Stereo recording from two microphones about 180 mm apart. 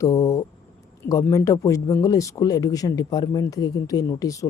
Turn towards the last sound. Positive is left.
turn(degrees=20)  # may be behind; listen again after turning